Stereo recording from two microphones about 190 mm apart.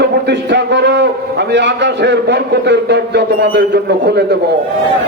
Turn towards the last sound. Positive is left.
turn(degrees=-60)  # may be behind; listen again after turning